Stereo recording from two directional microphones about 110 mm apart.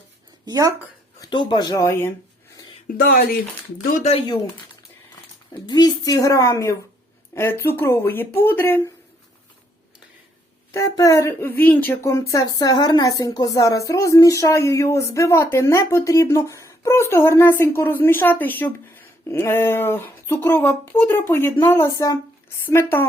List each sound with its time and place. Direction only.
0.4 s speech: 35° right (ahead or behind)
1.3 s a woman's voice: 45° left (ahead or behind); by 2.1 s 25° left (ahead or behind)
5.6 s a woman's voice: 35° left (ahead or behind); by 8.9 s 20° left (ahead or behind)
10.7 s speech: 30° left (ahead or behind)
12.0 s speech: 30° left (ahead or behind)